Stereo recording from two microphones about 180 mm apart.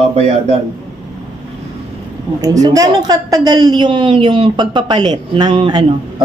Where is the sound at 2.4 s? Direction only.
20° right (ahead or behind).